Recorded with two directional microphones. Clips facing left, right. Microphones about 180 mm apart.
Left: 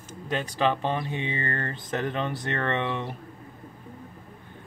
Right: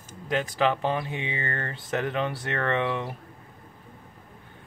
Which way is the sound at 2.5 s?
25° left (ahead or behind).